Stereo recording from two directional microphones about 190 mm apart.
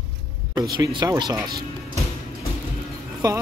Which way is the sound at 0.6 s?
20° right (ahead or behind).